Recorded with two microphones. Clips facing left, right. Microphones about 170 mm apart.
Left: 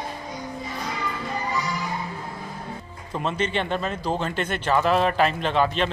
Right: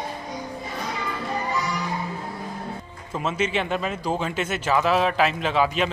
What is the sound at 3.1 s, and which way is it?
Speech, 5° right (ahead or behind).